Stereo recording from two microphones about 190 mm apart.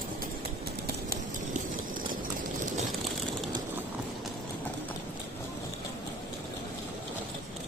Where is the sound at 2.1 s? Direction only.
45° right (ahead or behind).